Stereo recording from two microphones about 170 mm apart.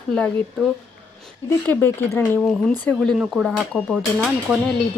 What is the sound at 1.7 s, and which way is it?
Speech, 10° left (ahead or behind).